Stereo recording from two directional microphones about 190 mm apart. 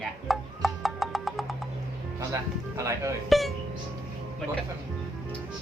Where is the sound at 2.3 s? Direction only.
15° right (ahead or behind).